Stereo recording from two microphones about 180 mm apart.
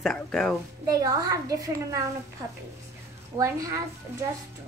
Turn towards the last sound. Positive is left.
turn(degrees=-15)  # may be behind; listen again after turning